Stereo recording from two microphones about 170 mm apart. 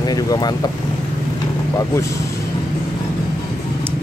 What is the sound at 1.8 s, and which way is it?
Speech, 20° left (ahead or behind).